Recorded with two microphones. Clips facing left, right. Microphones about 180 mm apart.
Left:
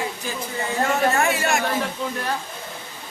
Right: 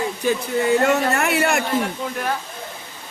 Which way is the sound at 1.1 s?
65° right (ahead or behind).